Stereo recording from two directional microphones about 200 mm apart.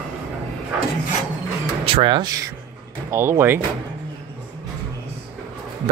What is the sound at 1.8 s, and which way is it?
Speech, 25° right (ahead or behind).